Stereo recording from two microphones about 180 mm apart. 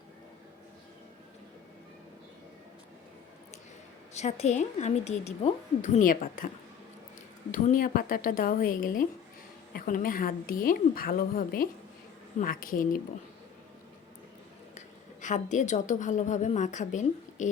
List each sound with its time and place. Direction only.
4.1 s a woman's voice: 35° left (ahead or behind)
7.5 s a woman's voice: 50° left (ahead or behind)
14.8 s a woman's voice: 45° left (ahead or behind)